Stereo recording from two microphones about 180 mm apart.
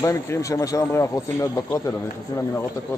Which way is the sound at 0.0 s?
15° left (ahead or behind).